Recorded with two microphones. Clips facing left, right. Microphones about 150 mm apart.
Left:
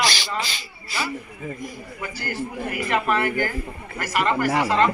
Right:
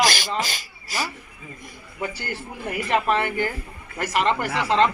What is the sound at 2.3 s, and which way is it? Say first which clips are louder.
Speech: left 2 dB; 30° right (ahead or behind).